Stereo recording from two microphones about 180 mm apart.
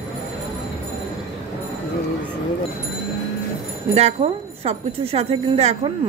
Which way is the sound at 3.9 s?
35° right (ahead or behind).